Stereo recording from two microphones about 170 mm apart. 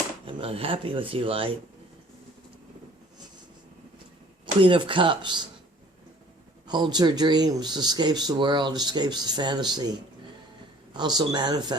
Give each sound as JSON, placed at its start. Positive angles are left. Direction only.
{"t": 0.3, "sound": "speech", "side_deg": -35}
{"t": 4.6, "sound": "speech", "side_deg": -30}
{"t": 6.7, "sound": "speech", "side_deg": -25}
{"t": 10.9, "sound": "speech", "side_deg": -25}